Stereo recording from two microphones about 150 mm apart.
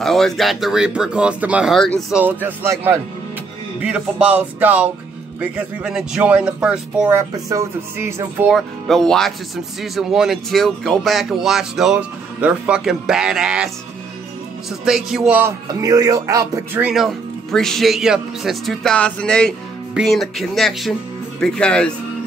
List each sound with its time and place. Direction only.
0.0 s speech: centre (ahead or behind)
1.8 s speech: 5° left (ahead or behind)
2.1 s speech: 10° right (ahead or behind)
7.4 s speech: 20° right (ahead or behind)
8.5 s speech: centre (ahead or behind)
14.9 s speech: 5° right (ahead or behind)
15.8 s speech: 25° right (ahead or behind)
16.7 s speech: 5° right (ahead or behind)